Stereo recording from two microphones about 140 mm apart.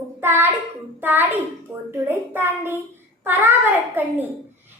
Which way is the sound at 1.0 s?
15° right (ahead or behind).